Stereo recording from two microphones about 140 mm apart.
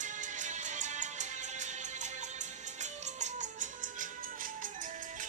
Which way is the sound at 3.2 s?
65° right (ahead or behind).